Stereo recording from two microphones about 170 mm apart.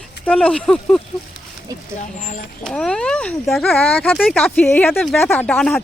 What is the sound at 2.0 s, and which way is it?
Speech, 50° left (ahead or behind).